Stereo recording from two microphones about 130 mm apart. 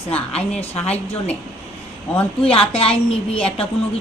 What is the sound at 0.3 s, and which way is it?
Speech, 50° left (ahead or behind).